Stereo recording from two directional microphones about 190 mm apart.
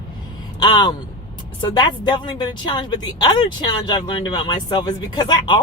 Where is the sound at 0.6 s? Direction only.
25° left (ahead or behind).